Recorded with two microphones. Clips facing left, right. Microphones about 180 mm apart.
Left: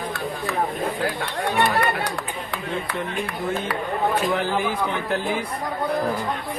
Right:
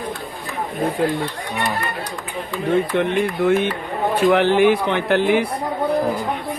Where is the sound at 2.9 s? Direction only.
80° right.